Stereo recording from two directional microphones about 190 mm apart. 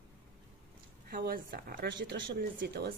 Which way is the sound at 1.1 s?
50° right (ahead or behind).